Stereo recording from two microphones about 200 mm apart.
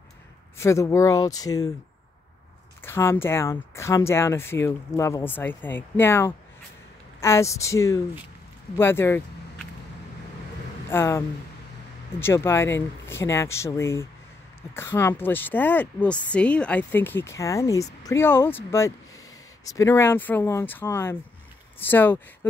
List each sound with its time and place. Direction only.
0.6 s speech: 15° left (ahead or behind)
2.8 s speech: 10° left (ahead or behind)
10.9 s speech: 10° left (ahead or behind)